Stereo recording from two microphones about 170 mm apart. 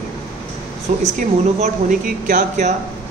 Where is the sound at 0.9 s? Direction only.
45° right (ahead or behind).